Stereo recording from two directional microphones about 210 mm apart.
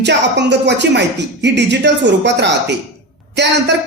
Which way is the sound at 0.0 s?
55° right (ahead or behind).